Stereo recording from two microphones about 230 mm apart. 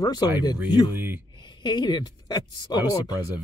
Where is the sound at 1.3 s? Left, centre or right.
Centre.